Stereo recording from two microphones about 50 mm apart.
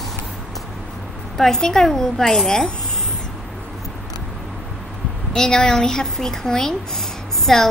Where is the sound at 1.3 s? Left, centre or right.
Centre.